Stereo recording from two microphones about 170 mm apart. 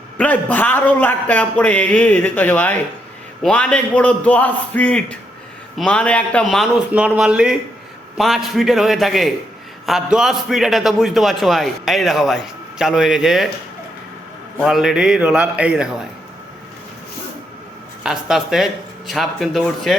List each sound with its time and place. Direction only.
0.2 s a man's voice: 10° left (ahead or behind)
14.6 s a man's voice: centre (ahead or behind)
18.0 s a man's voice: centre (ahead or behind)